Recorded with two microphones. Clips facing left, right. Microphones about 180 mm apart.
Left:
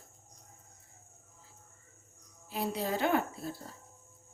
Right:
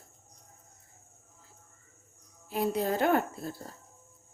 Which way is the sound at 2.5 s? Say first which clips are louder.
Right 5 dB; 50° right (ahead or behind).